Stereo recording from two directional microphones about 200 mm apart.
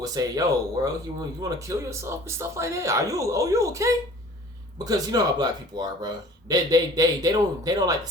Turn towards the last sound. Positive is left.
turn(degrees=-20)  # may be behind; listen again after turning